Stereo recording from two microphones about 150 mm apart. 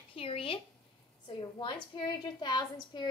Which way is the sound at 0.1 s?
40° left (ahead or behind).